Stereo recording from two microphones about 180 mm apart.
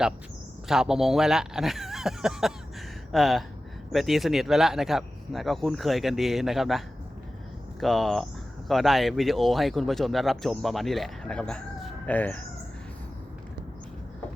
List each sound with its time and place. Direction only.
0.7 s speech: 5° right (ahead or behind)